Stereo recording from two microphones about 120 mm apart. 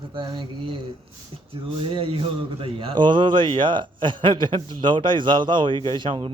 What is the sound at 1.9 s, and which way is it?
A man's voice, 50° right (ahead or behind).